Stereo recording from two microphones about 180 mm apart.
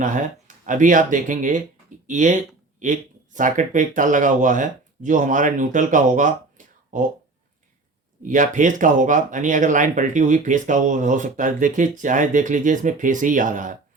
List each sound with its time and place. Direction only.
0.0 s speech: 45° right (ahead or behind)
8.3 s speech: 45° right (ahead or behind)